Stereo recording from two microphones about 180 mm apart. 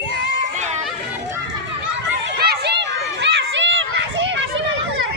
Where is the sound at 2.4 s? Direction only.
65° right (ahead or behind); by 4.4 s 85° right.